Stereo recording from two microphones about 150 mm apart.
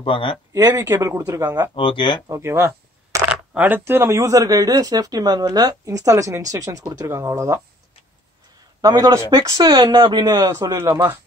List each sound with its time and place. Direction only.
0.0 s speech: 35° left (ahead or behind)
0.5 s speech: 15° right (ahead or behind)
1.8 s speech: 35° left (ahead or behind)
2.2 s speech: 20° right (ahead or behind)
8.8 s speech: 20° right (ahead or behind)